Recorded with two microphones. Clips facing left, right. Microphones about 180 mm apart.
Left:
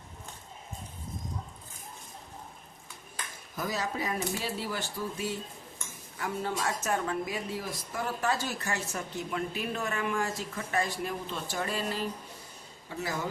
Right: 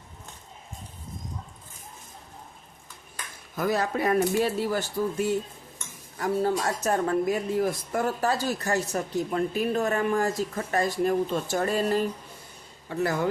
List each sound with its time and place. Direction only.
3.6 s a woman's voice: 60° right (ahead or behind)
8.2 s a woman's voice: 35° right (ahead or behind)
12.9 s speech: 60° right (ahead or behind)